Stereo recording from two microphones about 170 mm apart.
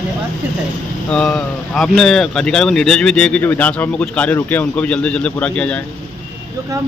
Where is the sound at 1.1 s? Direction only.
5° left (ahead or behind).